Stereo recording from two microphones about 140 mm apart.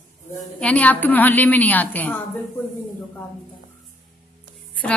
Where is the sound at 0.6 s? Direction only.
10° left (ahead or behind).